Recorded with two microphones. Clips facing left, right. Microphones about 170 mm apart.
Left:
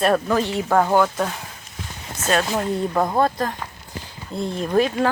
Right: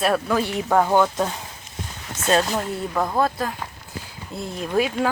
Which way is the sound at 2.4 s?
5° left (ahead or behind).